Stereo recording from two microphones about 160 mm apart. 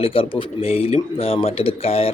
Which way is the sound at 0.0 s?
35° left (ahead or behind).